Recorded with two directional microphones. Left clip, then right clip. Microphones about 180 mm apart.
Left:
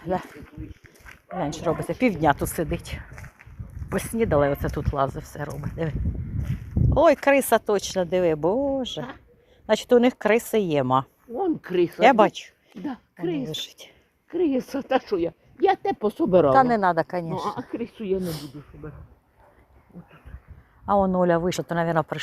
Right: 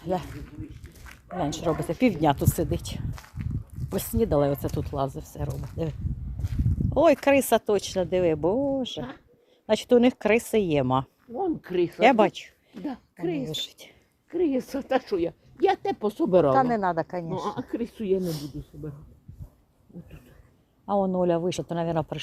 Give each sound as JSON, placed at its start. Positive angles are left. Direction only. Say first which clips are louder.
{"t": 0.0, "sound": "speech", "louder": "left 2 dB", "side_deg": -15}
{"t": 6.9, "sound": "speech", "louder": "left 2 dB", "side_deg": -15}
{"t": 11.3, "sound": "speech", "louder": "left 3 dB", "side_deg": 45}
{"t": 12.0, "sound": "speech", "louder": "left 3 dB", "side_deg": -15}
{"t": 12.8, "sound": "speech", "louder": "left 1 dB", "side_deg": 50}
{"t": 13.5, "sound": "speech", "louder": "even", "side_deg": -10}
{"t": 14.3, "sound": "a woman's voice", "louder": "left 2 dB", "side_deg": 50}
{"t": 16.5, "sound": "speech", "louder": "left 4 dB", "side_deg": 5}
{"t": 17.7, "sound": "speech", "louder": "even", "side_deg": -20}
{"t": 17.9, "sound": "speech", "louder": "right 1 dB", "side_deg": -35}
{"t": 18.2, "sound": "speech", "louder": "even", "side_deg": -5}
{"t": 20.8, "sound": "speech", "louder": "left 4 dB", "side_deg": -10}